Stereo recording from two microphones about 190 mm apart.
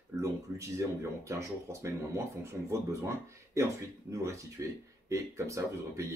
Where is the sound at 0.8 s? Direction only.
15° right (ahead or behind).